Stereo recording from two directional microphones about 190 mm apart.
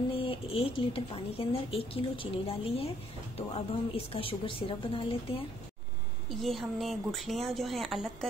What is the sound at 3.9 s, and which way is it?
A woman's voice, 30° left (ahead or behind).